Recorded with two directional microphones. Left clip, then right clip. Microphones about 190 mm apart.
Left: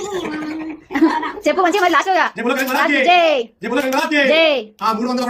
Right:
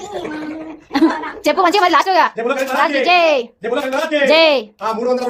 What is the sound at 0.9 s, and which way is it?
A woman's voice, 20° right (ahead or behind).